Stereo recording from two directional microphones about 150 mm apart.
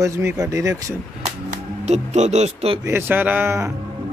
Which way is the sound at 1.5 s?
50° right (ahead or behind).